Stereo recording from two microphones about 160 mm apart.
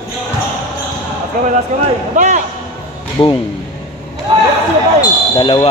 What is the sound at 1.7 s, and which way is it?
Speech, 50° right (ahead or behind).